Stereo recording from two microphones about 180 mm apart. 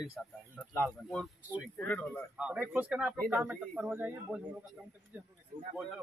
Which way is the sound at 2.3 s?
5° right (ahead or behind).